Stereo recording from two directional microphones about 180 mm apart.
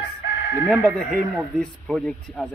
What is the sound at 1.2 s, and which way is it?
Speech, 5° right (ahead or behind).